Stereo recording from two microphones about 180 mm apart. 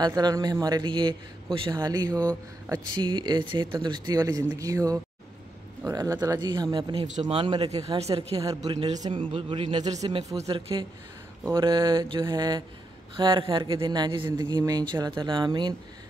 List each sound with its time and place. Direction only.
0.0 s speech: 20° right (ahead or behind)
8.4 s speech: 20° right (ahead or behind)
11.6 s speech: 20° right (ahead or behind)